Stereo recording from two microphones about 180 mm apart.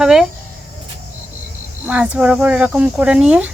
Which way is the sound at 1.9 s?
5° right (ahead or behind).